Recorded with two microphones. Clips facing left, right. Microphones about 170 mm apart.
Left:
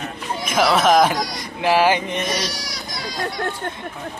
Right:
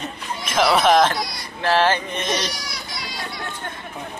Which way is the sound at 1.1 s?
45° left (ahead or behind).